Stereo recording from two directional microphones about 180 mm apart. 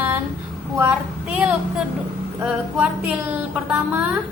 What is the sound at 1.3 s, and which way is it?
Speech, 10° right (ahead or behind).